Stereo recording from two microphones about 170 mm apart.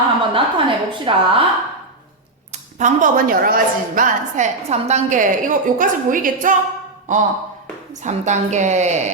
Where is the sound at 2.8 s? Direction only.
50° right (ahead or behind).